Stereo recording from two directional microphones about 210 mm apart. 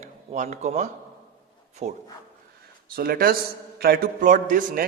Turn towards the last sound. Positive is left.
turn(degrees=-40)  # may be behind; listen again after turning